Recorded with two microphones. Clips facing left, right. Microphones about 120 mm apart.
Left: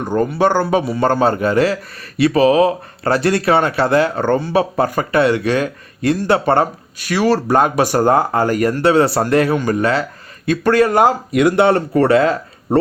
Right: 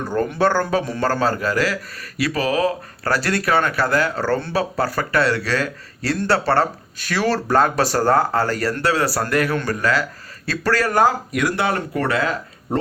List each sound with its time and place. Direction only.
0.0 s speech: 15° left (ahead or behind)
1.0 s a man's voice: 25° left (ahead or behind)
11.3 s speech: 55° left (ahead or behind)
11.6 s speech: 30° left (ahead or behind)